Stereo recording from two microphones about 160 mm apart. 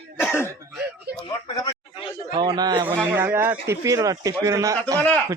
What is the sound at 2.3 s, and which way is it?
Speech, 25° right (ahead or behind).